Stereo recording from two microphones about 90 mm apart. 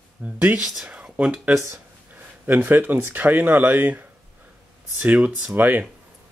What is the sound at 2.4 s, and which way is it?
Speech, 20° right (ahead or behind).